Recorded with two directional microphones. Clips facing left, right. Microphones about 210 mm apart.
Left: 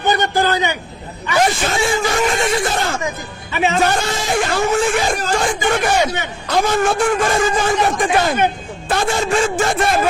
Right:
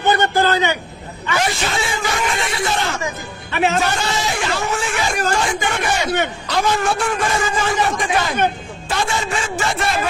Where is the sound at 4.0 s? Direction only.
50° left (ahead or behind).